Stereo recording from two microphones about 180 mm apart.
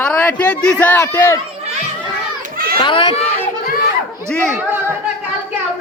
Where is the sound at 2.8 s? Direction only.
25° left (ahead or behind).